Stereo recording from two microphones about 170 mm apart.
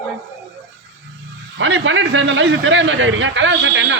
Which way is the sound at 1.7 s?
90° right.